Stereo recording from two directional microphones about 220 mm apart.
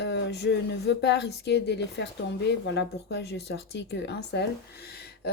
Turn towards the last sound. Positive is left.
turn(degrees=45)  # may be behind; listen again after turning